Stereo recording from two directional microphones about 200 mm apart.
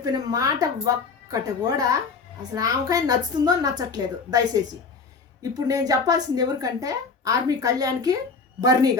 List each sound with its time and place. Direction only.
0.0 s a woman's voice: 20° right (ahead or behind)